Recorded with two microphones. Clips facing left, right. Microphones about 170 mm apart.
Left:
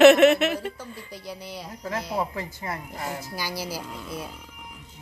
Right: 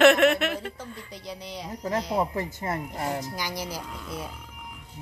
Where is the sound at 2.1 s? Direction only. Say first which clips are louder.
Right 2 dB; 25° right (ahead or behind).